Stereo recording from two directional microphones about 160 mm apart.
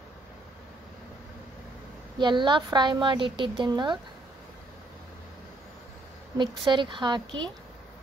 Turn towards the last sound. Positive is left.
turn(degrees=-25)  # may be behind; listen again after turning